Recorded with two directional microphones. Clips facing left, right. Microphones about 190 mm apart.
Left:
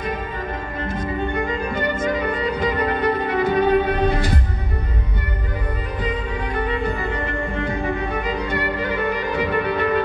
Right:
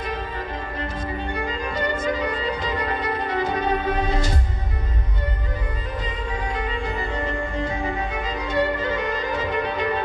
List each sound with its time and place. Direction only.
2.1 s violin: 55° left (ahead or behind)
6.5 s music: 60° left (ahead or behind)